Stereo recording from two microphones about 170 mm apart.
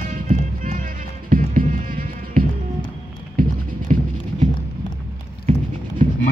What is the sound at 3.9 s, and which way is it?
Clip-clop, 50° right (ahead or behind).